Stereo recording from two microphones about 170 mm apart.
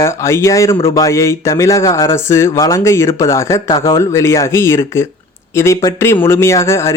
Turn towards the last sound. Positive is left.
turn(degrees=15)  # may be behind; listen again after turning